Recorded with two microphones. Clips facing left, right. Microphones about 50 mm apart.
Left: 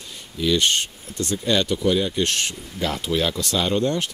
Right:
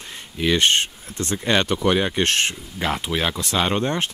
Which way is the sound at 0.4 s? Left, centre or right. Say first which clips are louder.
Right 2 dB; right.